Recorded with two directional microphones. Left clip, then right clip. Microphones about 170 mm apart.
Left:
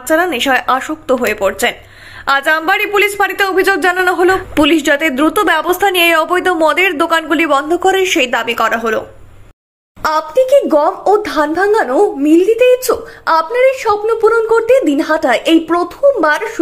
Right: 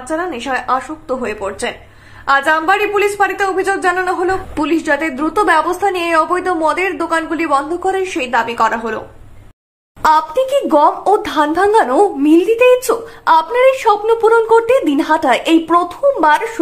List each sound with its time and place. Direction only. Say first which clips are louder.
0.1 s speech: left 7 dB; 25° left (ahead or behind)
10.0 s a woman's voice: even; 10° left (ahead or behind)